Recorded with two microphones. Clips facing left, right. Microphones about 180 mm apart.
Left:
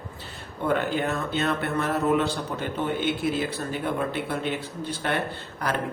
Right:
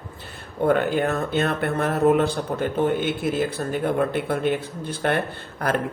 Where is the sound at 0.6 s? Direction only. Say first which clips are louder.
Right 5 dB; 50° right (ahead or behind).